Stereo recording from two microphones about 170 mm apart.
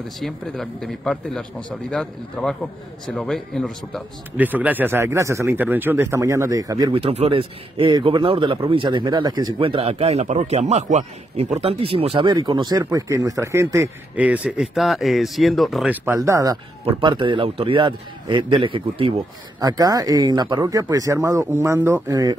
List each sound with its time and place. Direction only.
0.2 s a man's voice: centre (ahead or behind)
4.4 s speech: 10° right (ahead or behind)
7.0 s speech: 35° right (ahead or behind); by 16.0 s centre (ahead or behind)
16.1 s speech: 20° right (ahead or behind)